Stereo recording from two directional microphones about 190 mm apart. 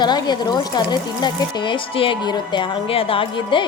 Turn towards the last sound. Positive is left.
turn(degrees=25)  # may be behind; listen again after turning